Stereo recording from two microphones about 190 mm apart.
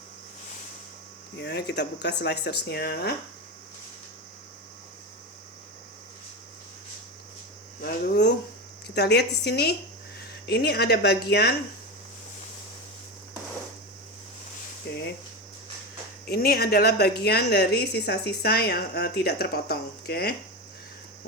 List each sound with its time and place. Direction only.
1.4 s a woman's voice: 60° left (ahead or behind)
7.8 s a sound: 55° left (ahead or behind)
9.0 s a woman's voice: 60° left (ahead or behind)
14.8 s speech: 60° left (ahead or behind)
16.2 s a woman's voice: 50° left (ahead or behind)